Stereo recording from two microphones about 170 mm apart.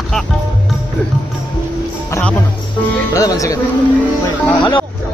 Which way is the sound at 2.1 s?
5° left (ahead or behind).